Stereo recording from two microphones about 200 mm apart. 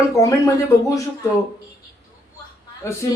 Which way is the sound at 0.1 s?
15° left (ahead or behind).